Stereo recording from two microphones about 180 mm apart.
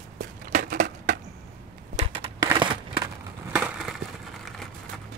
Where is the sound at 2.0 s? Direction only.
30° right (ahead or behind).